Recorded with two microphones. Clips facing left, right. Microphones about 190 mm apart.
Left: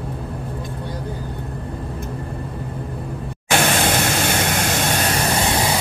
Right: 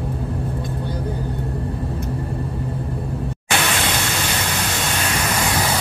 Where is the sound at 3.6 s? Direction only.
50° left (ahead or behind).